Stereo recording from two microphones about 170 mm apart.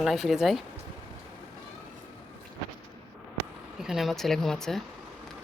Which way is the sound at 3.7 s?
Centre (ahead or behind).